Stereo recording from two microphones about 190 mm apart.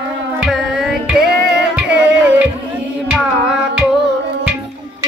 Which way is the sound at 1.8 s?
5° right (ahead or behind).